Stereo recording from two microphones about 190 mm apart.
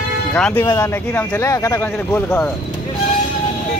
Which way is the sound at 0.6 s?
15° left (ahead or behind).